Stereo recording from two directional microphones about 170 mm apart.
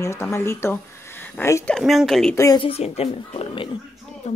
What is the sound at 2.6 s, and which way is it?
Speech, 35° left (ahead or behind).